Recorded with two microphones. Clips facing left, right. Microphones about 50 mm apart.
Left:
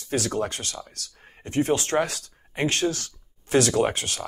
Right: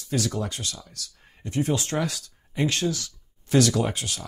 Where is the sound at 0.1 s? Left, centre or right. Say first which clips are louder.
Left 2 dB; left.